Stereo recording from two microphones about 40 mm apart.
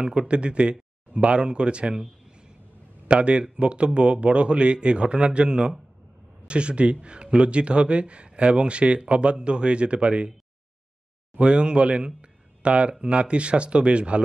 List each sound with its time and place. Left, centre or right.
0.0 s speech: right
3.1 s speech: right
11.3 s speech: right
12.2 s a sound: right
13.0 s speech: right